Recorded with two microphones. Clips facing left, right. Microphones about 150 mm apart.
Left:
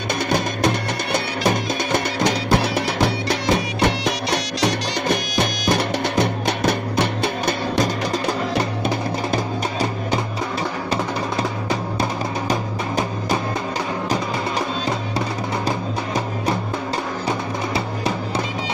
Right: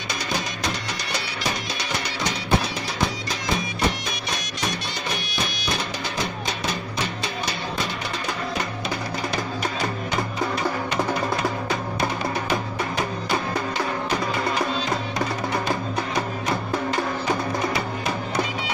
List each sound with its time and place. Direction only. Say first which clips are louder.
0.3 s music: left 8 dB; 55° left (ahead or behind); by 4.7 s 70° left (ahead or behind)
5.4 s music: left 6 dB; 60° left (ahead or behind)
7.8 s music: left 9 dB; 35° left (ahead or behind)
17.7 s music: left 3 dB; 30° left (ahead or behind)